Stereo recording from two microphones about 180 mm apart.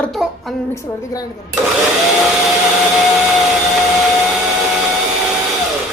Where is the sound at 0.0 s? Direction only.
Centre (ahead or behind).